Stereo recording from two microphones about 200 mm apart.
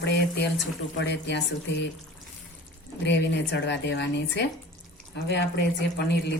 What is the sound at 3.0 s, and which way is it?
Speech, 60° left (ahead or behind).